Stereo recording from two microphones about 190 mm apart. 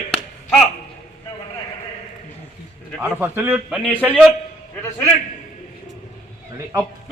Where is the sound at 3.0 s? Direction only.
10° right (ahead or behind).